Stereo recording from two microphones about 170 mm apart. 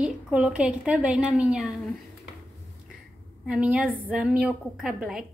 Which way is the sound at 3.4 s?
5° right (ahead or behind).